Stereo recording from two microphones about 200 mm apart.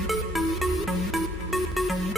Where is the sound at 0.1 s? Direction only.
Centre (ahead or behind).